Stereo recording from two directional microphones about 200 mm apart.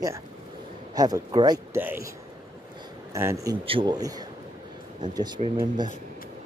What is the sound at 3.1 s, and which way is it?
Speech, 15° right (ahead or behind).